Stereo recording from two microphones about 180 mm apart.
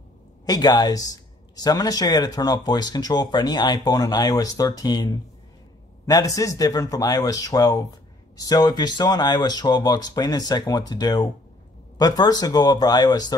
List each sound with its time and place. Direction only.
0.5 s speech: 20° left (ahead or behind)